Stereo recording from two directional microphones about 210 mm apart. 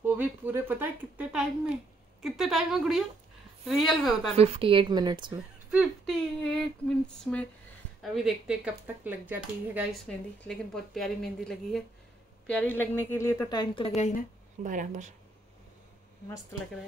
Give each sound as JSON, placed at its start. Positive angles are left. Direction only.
{"t": 0.0, "sound": "a sound", "side_deg": -10}
{"t": 3.6, "sound": "a woman's voice", "side_deg": 0}
{"t": 4.4, "sound": "speech", "side_deg": -25}
{"t": 5.7, "sound": "female singing", "side_deg": 0}
{"t": 8.0, "sound": "speech", "side_deg": 0}
{"t": 10.0, "sound": "a woman's voice", "side_deg": 5}
{"t": 14.6, "sound": "speech", "side_deg": -40}